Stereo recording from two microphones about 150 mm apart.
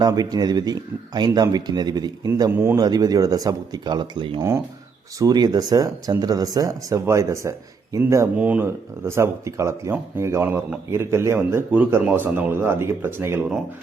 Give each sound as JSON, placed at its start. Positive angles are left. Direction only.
{"t": 0.0, "sound": "speech", "side_deg": -25}
{"t": 2.5, "sound": "speech", "side_deg": -15}
{"t": 4.4, "sound": "speech", "side_deg": -20}